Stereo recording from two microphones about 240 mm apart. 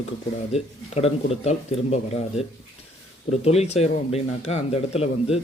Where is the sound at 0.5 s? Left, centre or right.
Left.